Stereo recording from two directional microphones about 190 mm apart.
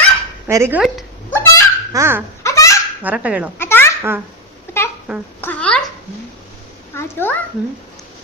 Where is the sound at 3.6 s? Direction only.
10° left (ahead or behind).